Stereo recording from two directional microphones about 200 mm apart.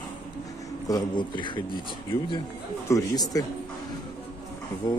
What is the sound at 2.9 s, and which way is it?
Speech, 15° left (ahead or behind).